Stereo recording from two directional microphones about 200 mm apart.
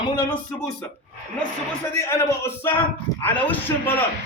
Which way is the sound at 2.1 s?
15° left (ahead or behind).